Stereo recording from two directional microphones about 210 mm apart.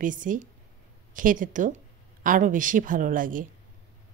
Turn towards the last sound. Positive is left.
turn(degrees=-40)  # may be behind; listen again after turning